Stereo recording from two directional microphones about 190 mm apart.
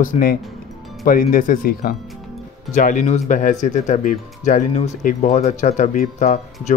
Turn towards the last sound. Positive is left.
turn(degrees=40)  # may be behind; listen again after turning